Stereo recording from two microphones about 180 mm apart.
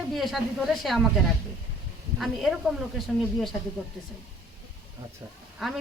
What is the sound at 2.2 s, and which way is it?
Speech, centre (ahead or behind).